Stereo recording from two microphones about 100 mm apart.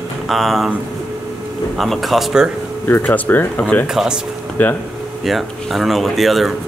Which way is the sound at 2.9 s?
20° left (ahead or behind).